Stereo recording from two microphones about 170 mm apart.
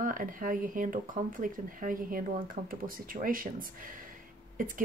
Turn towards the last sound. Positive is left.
turn(degrees=-50)  # may be behind; listen again after turning